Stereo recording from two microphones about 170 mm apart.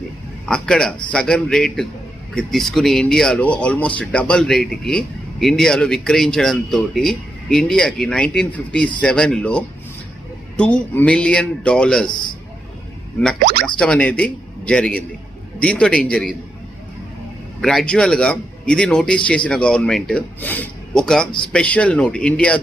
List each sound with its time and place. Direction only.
0.4 s speech: 5° left (ahead or behind)
13.4 s speech: 65° right (ahead or behind)
13.7 s a man's voice: 5° left (ahead or behind)
17.6 s a man's voice: centre (ahead or behind)